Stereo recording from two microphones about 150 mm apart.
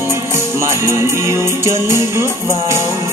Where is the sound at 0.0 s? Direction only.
15° right (ahead or behind).